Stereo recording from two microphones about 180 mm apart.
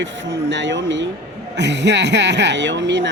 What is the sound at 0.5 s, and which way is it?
Speech, 90° right.